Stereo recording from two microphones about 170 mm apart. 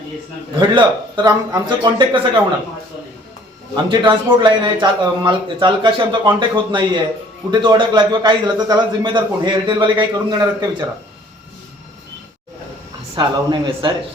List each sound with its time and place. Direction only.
0.6 s a man's voice: 25° right (ahead or behind)
3.8 s a man's voice: 25° right (ahead or behind)
13.1 s a man's voice: 30° right (ahead or behind)